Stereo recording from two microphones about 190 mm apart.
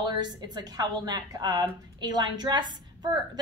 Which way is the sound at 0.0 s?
20° right (ahead or behind).